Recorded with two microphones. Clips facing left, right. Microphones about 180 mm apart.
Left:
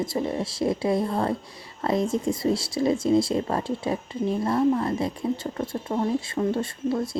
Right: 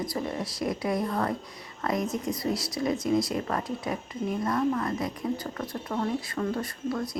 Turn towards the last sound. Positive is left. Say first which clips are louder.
# left 5 dB
turn(degrees=25)  # may be behind; listen again after turning